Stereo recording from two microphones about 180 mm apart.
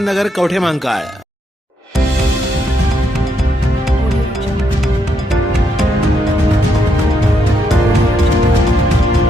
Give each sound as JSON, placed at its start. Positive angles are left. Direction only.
{"t": 0.0, "sound": "speech", "side_deg": 0}